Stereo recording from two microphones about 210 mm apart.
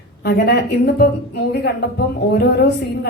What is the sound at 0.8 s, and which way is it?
Speech, 50° left (ahead or behind).